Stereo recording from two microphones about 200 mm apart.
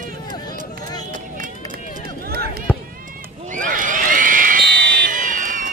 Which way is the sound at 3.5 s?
40° right (ahead or behind).